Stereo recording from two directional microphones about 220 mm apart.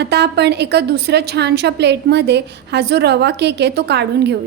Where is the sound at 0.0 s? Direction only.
50° right (ahead or behind).